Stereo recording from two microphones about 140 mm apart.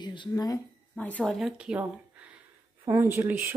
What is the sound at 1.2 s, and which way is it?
Speech, centre (ahead or behind).